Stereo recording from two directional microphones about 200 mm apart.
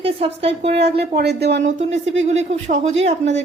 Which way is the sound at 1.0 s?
55° right (ahead or behind).